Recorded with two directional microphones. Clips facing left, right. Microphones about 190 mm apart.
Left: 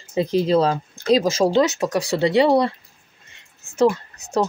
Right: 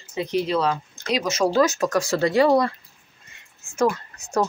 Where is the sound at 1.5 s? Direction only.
20° left (ahead or behind).